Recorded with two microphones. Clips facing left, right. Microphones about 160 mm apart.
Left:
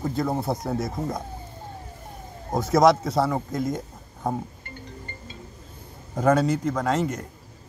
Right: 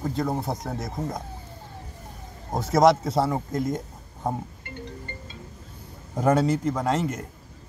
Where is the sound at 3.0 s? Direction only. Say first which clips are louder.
Left 1 dB; 25° right (ahead or behind).